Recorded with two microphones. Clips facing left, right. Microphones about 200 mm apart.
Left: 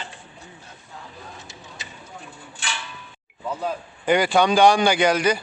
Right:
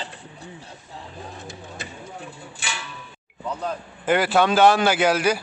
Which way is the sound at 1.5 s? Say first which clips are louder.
Right 6 dB; 55° right (ahead or behind).